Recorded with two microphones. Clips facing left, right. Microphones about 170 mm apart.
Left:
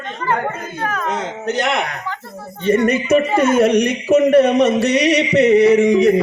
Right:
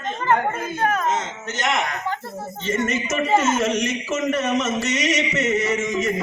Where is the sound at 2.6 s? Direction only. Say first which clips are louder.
Left 9 dB; 60° left (ahead or behind).